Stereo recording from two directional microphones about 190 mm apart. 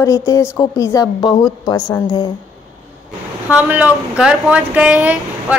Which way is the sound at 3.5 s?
10° right (ahead or behind).